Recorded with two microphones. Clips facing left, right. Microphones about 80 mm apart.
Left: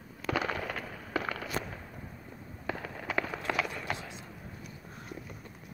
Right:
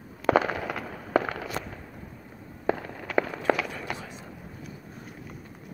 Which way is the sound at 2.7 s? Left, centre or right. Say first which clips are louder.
Right 10 dB; right.